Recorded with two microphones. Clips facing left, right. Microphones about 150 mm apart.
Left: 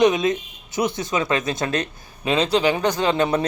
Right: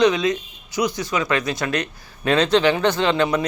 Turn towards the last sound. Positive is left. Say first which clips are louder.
# even
turn(degrees=25)  # may be behind; listen again after turning